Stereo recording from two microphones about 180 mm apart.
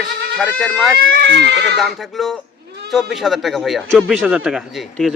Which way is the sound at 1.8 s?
Centre (ahead or behind).